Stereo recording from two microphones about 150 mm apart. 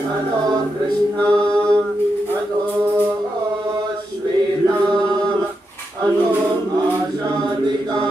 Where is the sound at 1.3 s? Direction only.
30° right (ahead or behind).